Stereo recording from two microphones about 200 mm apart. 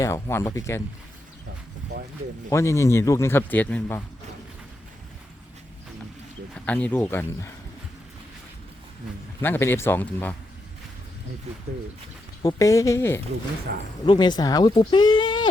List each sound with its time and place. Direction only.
0.0 s speech: 10° left (ahead or behind)
2.5 s speech: 15° left (ahead or behind)
6.7 s speech: 5° left (ahead or behind)
9.4 s speech: 10° left (ahead or behind)
12.4 s speech: 15° left (ahead or behind)
13.7 s speech: 50° right (ahead or behind)
14.0 s speech: 20° left (ahead or behind)